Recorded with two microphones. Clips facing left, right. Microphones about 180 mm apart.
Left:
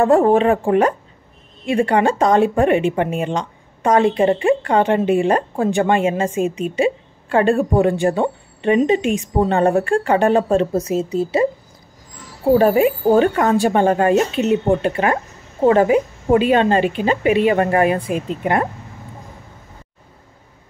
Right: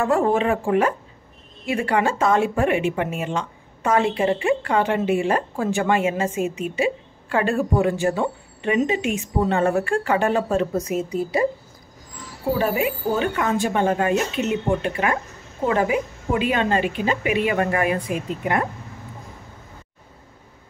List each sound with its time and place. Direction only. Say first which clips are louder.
0.0 s speech: left 6 dB; 35° left (ahead or behind)
12.5 s speech: left 9 dB; 40° left (ahead or behind)